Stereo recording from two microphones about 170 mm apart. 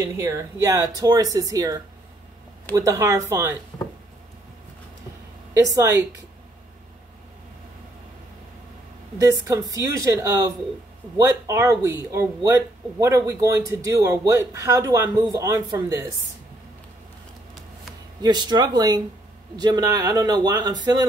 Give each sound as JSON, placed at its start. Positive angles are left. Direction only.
{"t": 0.0, "sound": "speech", "side_deg": -15}
{"t": 5.5, "sound": "speech", "side_deg": -20}
{"t": 9.5, "sound": "speech", "side_deg": -20}
{"t": 18.2, "sound": "speech", "side_deg": -25}